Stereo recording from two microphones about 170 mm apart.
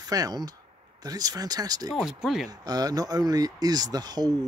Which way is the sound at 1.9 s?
Centre (ahead or behind).